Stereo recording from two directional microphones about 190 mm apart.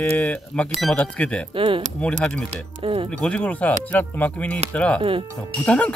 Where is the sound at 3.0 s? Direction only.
5° left (ahead or behind).